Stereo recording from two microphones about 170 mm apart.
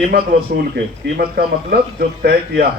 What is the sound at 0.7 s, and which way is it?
A man's voice, 60° right (ahead or behind).